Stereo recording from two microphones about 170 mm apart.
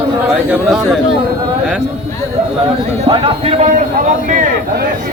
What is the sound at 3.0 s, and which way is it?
Speech, 35° right (ahead or behind).